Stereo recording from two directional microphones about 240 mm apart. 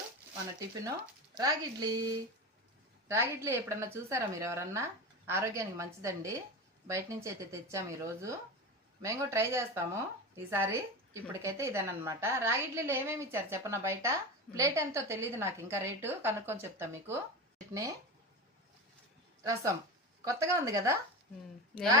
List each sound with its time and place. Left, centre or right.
1.4 s a woman's voice: centre
19.4 s a woman's voice: centre